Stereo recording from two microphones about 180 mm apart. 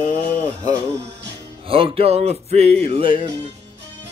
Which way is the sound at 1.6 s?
30° right (ahead or behind).